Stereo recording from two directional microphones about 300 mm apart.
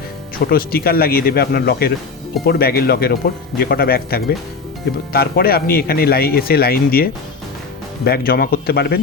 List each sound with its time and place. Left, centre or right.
0.5 s speech: left